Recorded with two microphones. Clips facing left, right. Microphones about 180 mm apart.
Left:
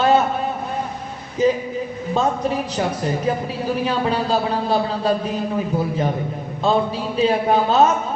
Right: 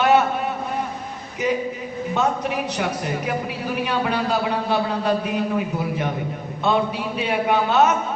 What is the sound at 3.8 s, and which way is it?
A man's voice, 30° left (ahead or behind).